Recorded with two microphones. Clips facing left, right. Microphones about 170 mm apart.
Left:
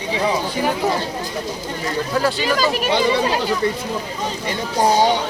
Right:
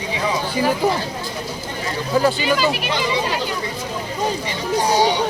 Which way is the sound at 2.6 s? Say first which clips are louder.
Left 1 dB; 40° left (ahead or behind).